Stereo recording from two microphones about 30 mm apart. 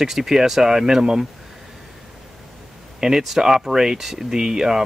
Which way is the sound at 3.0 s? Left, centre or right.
Right.